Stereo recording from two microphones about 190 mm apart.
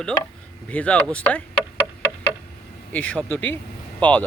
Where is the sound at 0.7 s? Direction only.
5° left (ahead or behind).